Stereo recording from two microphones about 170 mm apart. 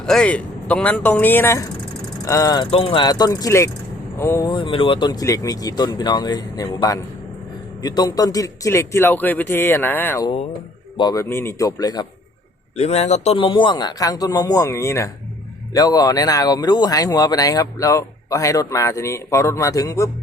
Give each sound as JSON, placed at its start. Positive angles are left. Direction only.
{"t": 0.0, "sound": "a man's voice", "side_deg": 5}
{"t": 2.6, "sound": "a man's voice", "side_deg": 30}
{"t": 4.5, "sound": "a man's voice", "side_deg": 30}
{"t": 10.9, "sound": "speech", "side_deg": 25}
{"t": 12.7, "sound": "speech", "side_deg": 40}